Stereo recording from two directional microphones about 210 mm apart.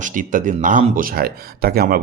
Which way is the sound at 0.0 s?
40° right (ahead or behind).